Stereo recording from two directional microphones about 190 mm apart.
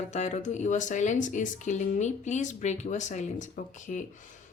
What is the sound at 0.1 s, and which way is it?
Speech, 40° left (ahead or behind).